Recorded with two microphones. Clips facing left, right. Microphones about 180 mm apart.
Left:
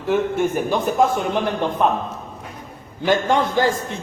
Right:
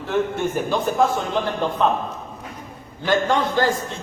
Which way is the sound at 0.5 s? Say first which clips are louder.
Left 2 dB; 15° left (ahead or behind).